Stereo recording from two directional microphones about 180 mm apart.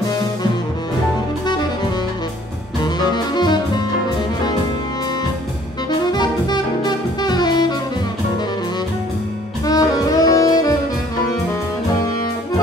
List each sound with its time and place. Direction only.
2.8 s music: 25° left (ahead or behind)
5.9 s saxophone: 25° left (ahead or behind)
9.7 s saxophone: 20° left (ahead or behind)